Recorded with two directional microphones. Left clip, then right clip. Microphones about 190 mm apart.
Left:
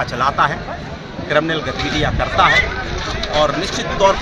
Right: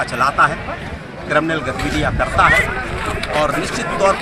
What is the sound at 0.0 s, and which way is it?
Speech, centre (ahead or behind).